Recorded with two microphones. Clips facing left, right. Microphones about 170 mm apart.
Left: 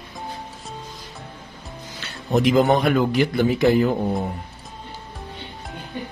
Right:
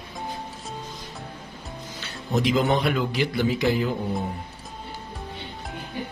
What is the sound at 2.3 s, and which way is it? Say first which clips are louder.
A man's voice: left 5 dB; 55° left (ahead or behind).